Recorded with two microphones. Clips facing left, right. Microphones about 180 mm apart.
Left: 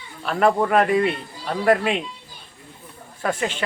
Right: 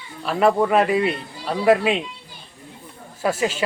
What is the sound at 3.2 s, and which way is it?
Speech, 5° right (ahead or behind).